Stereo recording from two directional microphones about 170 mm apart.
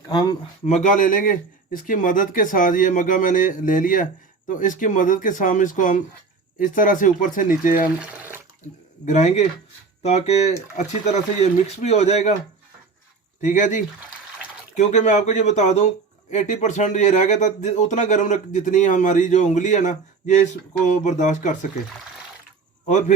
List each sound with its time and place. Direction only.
0.1 s speech: 25° left (ahead or behind)
0.6 s speech: 45° left (ahead or behind)
7.9 s speech: 5° right (ahead or behind)
9.0 s speech: 40° left (ahead or behind)
13.4 s speech: 50° left (ahead or behind)
22.9 s speech: 45° left (ahead or behind)